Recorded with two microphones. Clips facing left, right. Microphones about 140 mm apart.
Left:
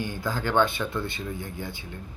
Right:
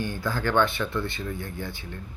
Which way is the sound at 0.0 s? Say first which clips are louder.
Right 1 dB; 15° left (ahead or behind).